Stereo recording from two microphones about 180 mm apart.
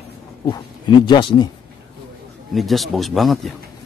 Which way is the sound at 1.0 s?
25° left (ahead or behind).